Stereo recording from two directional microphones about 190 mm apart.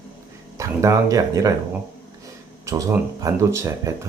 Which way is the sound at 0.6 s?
15° right (ahead or behind).